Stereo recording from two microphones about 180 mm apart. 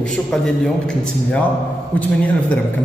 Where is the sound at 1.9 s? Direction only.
10° left (ahead or behind).